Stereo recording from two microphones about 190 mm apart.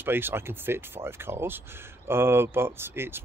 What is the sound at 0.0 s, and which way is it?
Speech, 10° right (ahead or behind).